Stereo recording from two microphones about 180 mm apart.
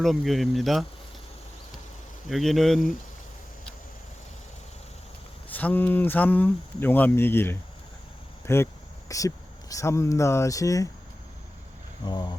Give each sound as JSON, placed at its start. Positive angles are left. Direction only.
{"t": 0.0, "sound": "speech", "side_deg": 0}
{"t": 2.3, "sound": "speech", "side_deg": 0}
{"t": 5.5, "sound": "speech", "side_deg": 10}
{"t": 12.0, "sound": "speech", "side_deg": 25}